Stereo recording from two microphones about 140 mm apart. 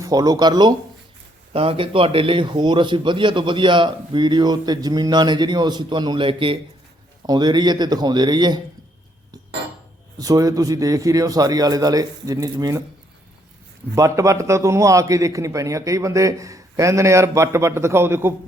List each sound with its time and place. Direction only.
0.0 s a man's voice: 25° right (ahead or behind)
10.2 s a man's voice: 25° right (ahead or behind)
13.9 s a man's voice: 25° right (ahead or behind)